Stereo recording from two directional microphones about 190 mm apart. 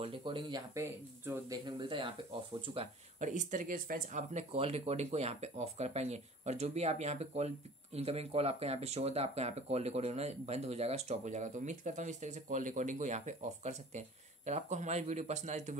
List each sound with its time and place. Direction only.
0.0 s speech: 25° right (ahead or behind)
1.8 s speech: 25° right (ahead or behind)